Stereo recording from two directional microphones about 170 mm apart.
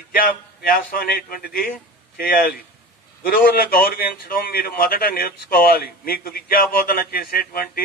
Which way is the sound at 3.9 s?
60° left (ahead or behind).